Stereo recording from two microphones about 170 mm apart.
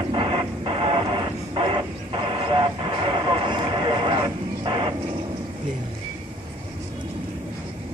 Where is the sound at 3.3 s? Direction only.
30° right (ahead or behind).